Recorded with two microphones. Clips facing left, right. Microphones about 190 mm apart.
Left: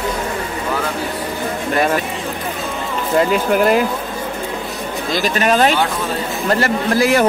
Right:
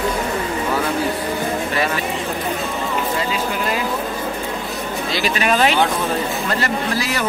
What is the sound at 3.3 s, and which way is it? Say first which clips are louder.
Speech: left 8 dB; 55° left (ahead or behind).